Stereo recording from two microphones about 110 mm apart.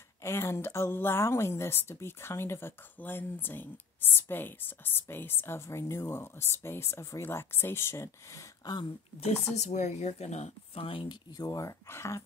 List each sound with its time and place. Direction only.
0.2 s speech: 25° left (ahead or behind)
9.6 s speech: 90° left; by 11.1 s 55° left (ahead or behind)
11.3 s speech: 30° left (ahead or behind)